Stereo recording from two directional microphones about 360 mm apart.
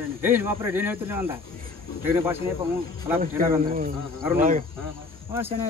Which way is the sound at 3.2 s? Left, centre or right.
Right.